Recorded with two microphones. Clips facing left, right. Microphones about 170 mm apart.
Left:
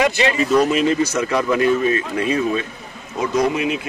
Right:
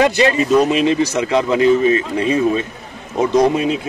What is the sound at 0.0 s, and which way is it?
Speech, 40° right (ahead or behind).